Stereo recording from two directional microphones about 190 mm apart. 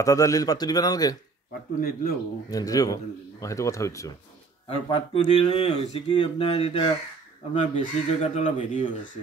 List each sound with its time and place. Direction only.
0.0 s speech: 15° left (ahead or behind)
1.8 s speech: 50° left (ahead or behind)
2.5 s speech: 20° left (ahead or behind)
4.6 s speech: 25° left (ahead or behind)
7.5 s speech: 35° left (ahead or behind)